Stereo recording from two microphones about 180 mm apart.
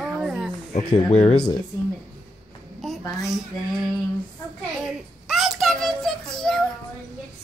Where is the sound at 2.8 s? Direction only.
Centre (ahead or behind).